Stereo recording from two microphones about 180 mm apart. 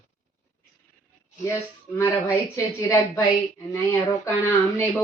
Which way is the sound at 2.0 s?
15° left (ahead or behind).